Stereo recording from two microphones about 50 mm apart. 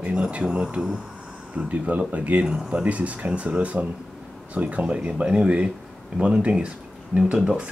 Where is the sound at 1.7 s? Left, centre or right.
Right.